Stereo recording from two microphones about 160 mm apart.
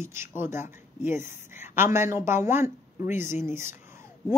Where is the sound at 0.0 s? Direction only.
15° right (ahead or behind).